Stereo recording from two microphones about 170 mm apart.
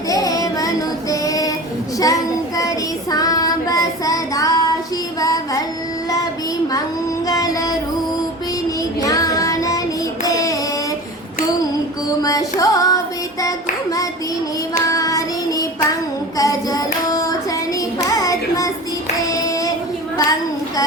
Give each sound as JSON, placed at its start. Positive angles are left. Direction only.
{"t": 0.1, "sound": "child singing", "side_deg": 20}
{"t": 1.1, "sound": "female singing", "side_deg": 20}
{"t": 2.0, "sound": "child singing", "side_deg": 20}
{"t": 7.3, "sound": "music", "side_deg": 20}
{"t": 9.0, "sound": "child singing", "side_deg": 20}
{"t": 12.2, "sound": "music", "side_deg": 20}
{"t": 14.8, "sound": "child singing", "side_deg": 20}
{"t": 16.4, "sound": "hands", "side_deg": 20}
{"t": 18.1, "sound": "child singing", "side_deg": 20}
{"t": 19.3, "sound": "singing", "side_deg": 20}